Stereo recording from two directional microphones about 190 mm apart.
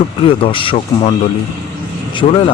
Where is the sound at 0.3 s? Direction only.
30° left (ahead or behind).